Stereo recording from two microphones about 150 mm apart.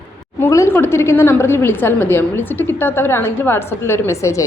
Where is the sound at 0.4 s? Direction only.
20° left (ahead or behind).